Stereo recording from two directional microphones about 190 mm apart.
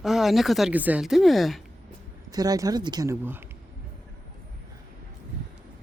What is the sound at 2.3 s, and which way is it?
Speech, 20° right (ahead or behind).